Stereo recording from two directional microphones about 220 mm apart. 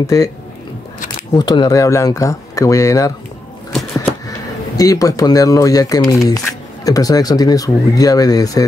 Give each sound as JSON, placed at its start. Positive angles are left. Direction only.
{"t": 0.0, "sound": "speech", "side_deg": 15}
{"t": 1.3, "sound": "speech", "side_deg": 20}
{"t": 4.7, "sound": "speech", "side_deg": 15}